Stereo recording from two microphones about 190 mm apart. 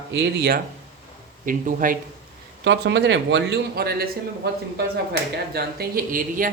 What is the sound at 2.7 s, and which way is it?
Speech, 65° right (ahead or behind).